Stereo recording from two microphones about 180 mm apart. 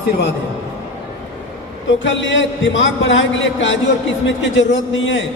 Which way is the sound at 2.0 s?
90° left.